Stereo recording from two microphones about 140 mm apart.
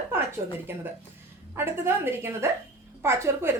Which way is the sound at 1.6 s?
15° right (ahead or behind).